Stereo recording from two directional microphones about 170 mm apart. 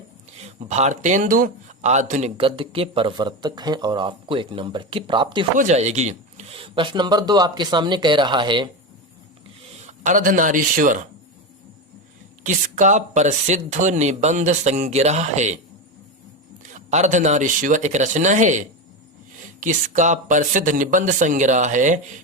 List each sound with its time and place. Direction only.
0.3 s speech: 40° right (ahead or behind)
2.5 s speech: 30° right (ahead or behind)
5.5 s speech: 45° right (ahead or behind)
9.6 s speech: 45° right (ahead or behind)
12.4 s speech: 45° right (ahead or behind)
16.7 s speech: 45° right (ahead or behind)